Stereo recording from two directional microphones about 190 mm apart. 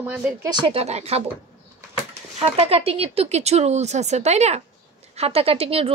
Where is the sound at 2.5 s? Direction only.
30° right (ahead or behind).